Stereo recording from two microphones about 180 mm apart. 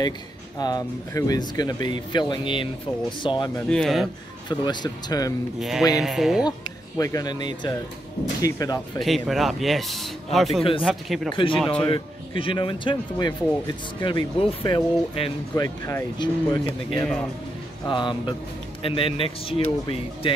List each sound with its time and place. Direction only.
0.6 s speech: 20° left (ahead or behind)
3.6 s speech: centre (ahead or behind)
4.5 s speech: 25° left (ahead or behind)
5.6 s speech: centre (ahead or behind)
7.0 s speech: 20° left (ahead or behind)
9.0 s speech: centre (ahead or behind)
11.3 s speech: 30° left (ahead or behind)
11.6 s speech: 5° left (ahead or behind)
11.9 s speech: 30° left (ahead or behind)
15.5 s speech: 15° left (ahead or behind)